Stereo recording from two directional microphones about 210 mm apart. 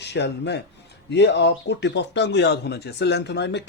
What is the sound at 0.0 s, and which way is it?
Speech, 55° left (ahead or behind).